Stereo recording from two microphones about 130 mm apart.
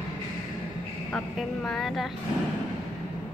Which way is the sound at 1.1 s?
5° left (ahead or behind).